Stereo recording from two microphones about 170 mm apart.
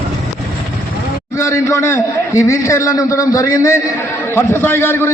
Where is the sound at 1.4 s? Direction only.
15° left (ahead or behind).